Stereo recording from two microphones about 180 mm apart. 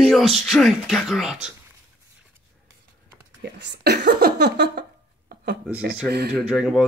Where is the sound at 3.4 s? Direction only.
70° right (ahead or behind).